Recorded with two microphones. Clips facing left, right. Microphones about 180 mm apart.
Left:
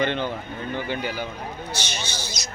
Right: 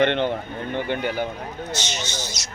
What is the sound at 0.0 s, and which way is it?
Speech, 60° right (ahead or behind).